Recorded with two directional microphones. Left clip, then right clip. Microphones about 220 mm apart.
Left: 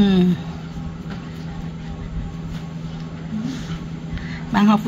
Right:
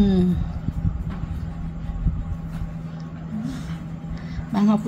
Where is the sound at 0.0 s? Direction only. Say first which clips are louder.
Left 3 dB; 5° right (ahead or behind).